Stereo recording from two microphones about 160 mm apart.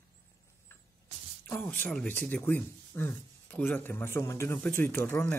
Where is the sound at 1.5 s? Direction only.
10° left (ahead or behind).